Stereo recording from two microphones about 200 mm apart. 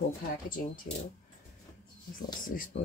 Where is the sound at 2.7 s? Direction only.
60° left (ahead or behind).